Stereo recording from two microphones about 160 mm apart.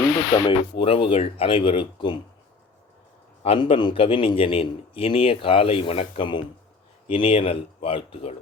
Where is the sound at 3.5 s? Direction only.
30° left (ahead or behind).